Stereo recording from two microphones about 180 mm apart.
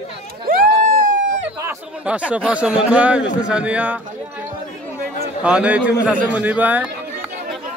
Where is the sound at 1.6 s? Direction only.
5° right (ahead or behind).